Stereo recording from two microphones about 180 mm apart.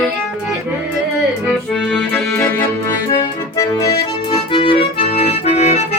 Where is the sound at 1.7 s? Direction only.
Centre (ahead or behind); by 3.8 s 20° left (ahead or behind).